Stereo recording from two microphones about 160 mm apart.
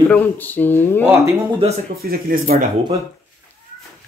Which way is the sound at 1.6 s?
35° right (ahead or behind).